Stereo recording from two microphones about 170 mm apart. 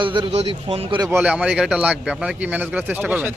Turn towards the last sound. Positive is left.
turn(degrees=-10)  # may be behind; listen again after turning